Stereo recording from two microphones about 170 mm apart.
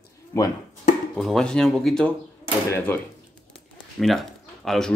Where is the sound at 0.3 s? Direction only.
20° left (ahead or behind).